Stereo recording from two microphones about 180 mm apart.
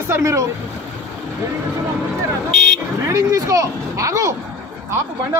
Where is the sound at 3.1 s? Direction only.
20° right (ahead or behind).